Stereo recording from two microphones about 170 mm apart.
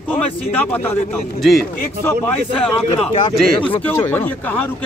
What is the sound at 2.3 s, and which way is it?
A man's voice, 10° left (ahead or behind).